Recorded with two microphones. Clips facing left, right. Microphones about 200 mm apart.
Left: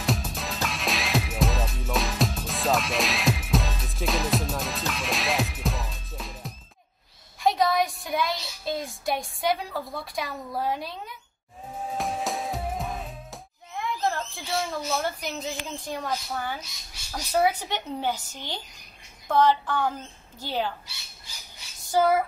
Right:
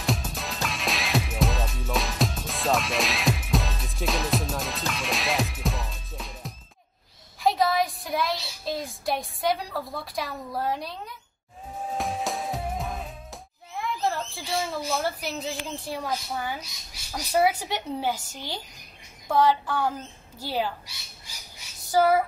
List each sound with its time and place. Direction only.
0.0 s music: centre (ahead or behind)
7.3 s a woman's voice: centre (ahead or behind)
12.0 s music: centre (ahead or behind)
17.1 s a woman's voice: 5° right (ahead or behind)
21.9 s female singing: 5° right (ahead or behind)